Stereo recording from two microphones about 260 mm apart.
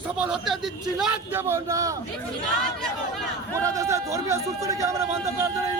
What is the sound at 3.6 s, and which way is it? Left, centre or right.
A man's voice, centre.